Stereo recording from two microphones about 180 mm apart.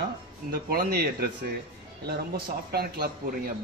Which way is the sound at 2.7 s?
60° right (ahead or behind).